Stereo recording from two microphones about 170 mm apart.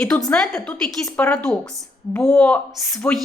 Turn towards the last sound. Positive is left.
turn(degrees=0)  # may be behind; listen again after turning